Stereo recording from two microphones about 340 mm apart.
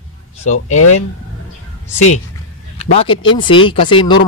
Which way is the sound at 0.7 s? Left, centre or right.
Left.